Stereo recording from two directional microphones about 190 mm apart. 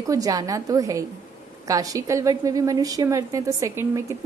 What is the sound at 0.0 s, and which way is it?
A woman's voice, 20° right (ahead or behind).